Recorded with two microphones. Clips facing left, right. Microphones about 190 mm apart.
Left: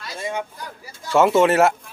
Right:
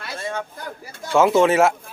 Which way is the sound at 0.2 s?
15° left (ahead or behind).